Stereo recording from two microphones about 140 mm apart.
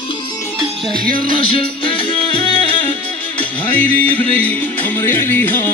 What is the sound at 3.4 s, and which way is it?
Music, 10° left (ahead or behind).